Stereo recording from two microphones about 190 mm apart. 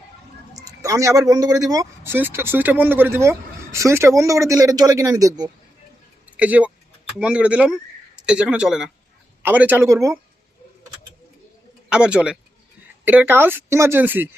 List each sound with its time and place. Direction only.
0.6 s speech: 15° right (ahead or behind)
6.3 s speech: 5° right (ahead or behind)
11.9 s a man's voice: 5° right (ahead or behind)